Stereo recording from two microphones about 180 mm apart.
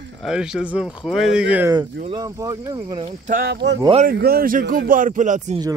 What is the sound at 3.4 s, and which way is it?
Speech, 75° right (ahead or behind).